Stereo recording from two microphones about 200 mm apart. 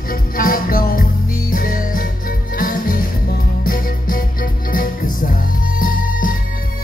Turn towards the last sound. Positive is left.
turn(degrees=45)  # may be behind; listen again after turning